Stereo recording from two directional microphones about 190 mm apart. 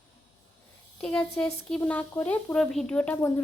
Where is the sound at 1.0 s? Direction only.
5° left (ahead or behind).